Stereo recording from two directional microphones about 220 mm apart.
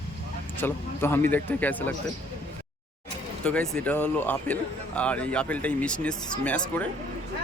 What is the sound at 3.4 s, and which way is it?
Speech, 5° left (ahead or behind).